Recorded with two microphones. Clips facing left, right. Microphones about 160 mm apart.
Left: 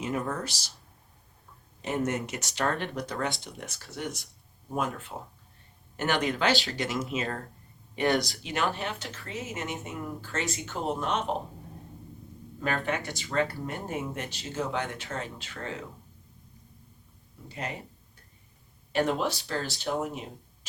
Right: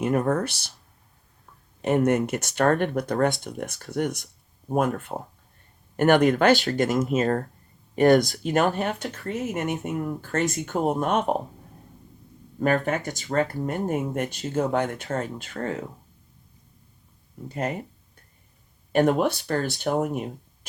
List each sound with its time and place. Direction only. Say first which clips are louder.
0.0 s speech: right 8 dB; 55° right (ahead or behind)
1.8 s speech: right 9 dB; 55° right (ahead or behind)
12.5 s speech: right 7 dB; 45° right (ahead or behind)
17.5 s speech: right 8 dB; 45° right (ahead or behind)
18.9 s speech: right 7 dB; 55° right (ahead or behind)